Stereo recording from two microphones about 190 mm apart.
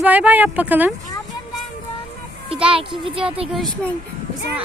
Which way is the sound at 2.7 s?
25° right (ahead or behind).